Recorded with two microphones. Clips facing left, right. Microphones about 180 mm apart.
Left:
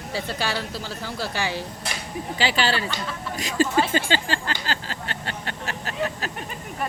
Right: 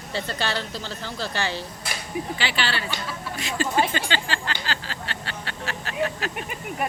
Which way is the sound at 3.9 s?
40° left (ahead or behind).